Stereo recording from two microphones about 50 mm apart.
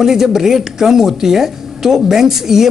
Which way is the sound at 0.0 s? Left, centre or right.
Centre.